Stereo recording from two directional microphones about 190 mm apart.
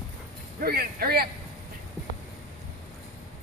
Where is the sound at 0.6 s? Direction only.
55° right (ahead or behind).